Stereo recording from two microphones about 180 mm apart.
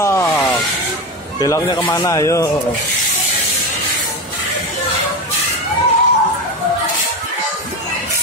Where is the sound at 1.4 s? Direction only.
20° left (ahead or behind).